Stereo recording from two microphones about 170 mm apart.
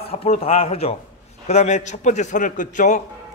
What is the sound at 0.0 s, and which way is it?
A man's voice, 35° left (ahead or behind).